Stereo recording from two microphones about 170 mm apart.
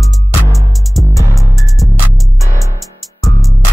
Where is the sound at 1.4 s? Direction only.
Centre (ahead or behind).